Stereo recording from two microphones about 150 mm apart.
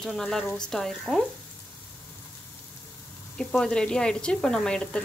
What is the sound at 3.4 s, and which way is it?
Speech, 5° left (ahead or behind).